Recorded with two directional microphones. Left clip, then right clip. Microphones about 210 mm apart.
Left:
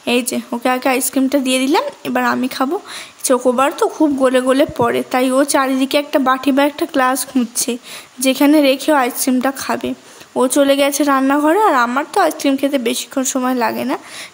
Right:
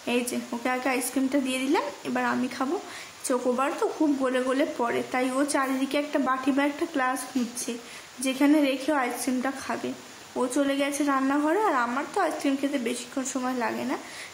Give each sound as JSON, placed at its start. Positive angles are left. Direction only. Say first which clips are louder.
{"t": 0.0, "sound": "a woman's voice", "louder": "left 10 dB", "side_deg": 50}